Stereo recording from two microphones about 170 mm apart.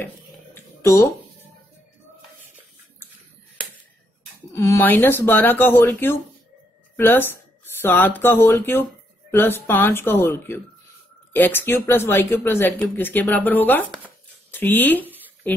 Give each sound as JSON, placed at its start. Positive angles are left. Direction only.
{"t": 0.8, "sound": "speech", "side_deg": 15}
{"t": 4.5, "sound": "speech", "side_deg": 15}